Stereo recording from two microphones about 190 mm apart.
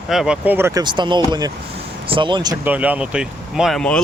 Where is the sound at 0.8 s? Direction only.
25° right (ahead or behind).